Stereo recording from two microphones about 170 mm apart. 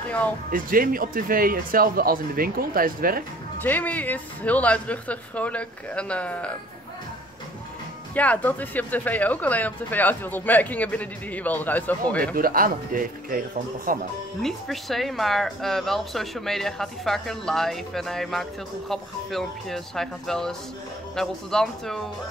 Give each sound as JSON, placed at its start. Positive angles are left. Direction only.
{"t": 0.5, "sound": "speech", "side_deg": -55}
{"t": 3.5, "sound": "speech", "side_deg": 10}
{"t": 8.1, "sound": "speech", "side_deg": 10}
{"t": 12.2, "sound": "speech", "side_deg": -55}
{"t": 14.4, "sound": "speech", "side_deg": 0}